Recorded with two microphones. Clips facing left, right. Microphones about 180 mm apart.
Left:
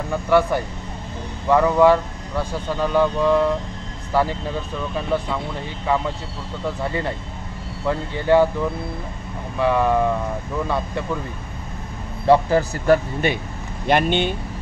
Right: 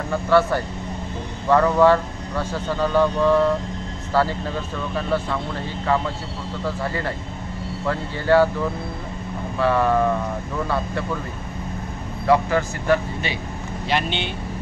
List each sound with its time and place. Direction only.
0.3 s speech: 15° left (ahead or behind)
9.6 s speech: 15° left (ahead or behind)
12.3 s speech: 35° left (ahead or behind); by 14.3 s 50° left (ahead or behind)